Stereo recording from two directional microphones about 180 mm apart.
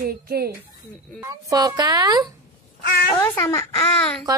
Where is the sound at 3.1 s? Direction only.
15° left (ahead or behind).